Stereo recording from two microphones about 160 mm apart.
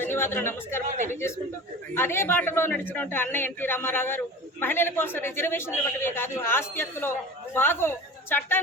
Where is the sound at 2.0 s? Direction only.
15° left (ahead or behind).